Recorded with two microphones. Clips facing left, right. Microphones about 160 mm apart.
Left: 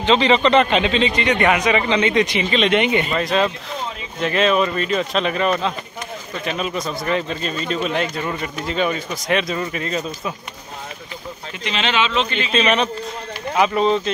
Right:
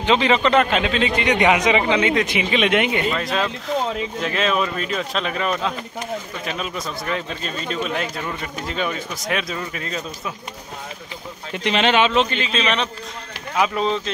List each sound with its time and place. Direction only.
0.0 s a man's voice: 5° right (ahead or behind)
11.5 s speech: 55° right (ahead or behind)
12.4 s a man's voice: 5° left (ahead or behind)